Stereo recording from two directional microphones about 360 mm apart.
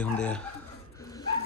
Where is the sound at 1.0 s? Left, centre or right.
Centre.